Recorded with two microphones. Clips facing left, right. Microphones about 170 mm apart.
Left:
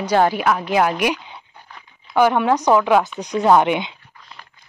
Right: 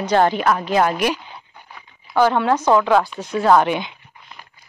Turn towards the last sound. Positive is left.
turn(degrees=20)  # may be behind; listen again after turning